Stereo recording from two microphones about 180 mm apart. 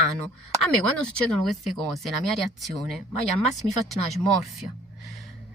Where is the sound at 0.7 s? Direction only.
5° left (ahead or behind).